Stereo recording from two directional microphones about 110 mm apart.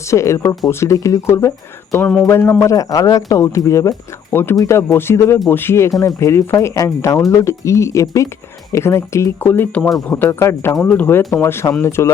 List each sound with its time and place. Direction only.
0.1 s speech: 25° left (ahead or behind)
2.0 s speech: 10° left (ahead or behind)
2.2 s speech: 20° left (ahead or behind)
10.8 s speech: 10° left (ahead or behind)
11.3 s speech: 20° left (ahead or behind)